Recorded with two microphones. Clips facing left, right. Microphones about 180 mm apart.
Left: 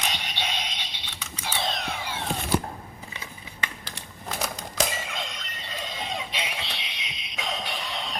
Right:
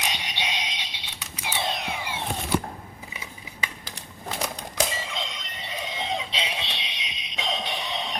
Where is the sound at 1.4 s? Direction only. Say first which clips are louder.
Right 1 dB; 10° right (ahead or behind).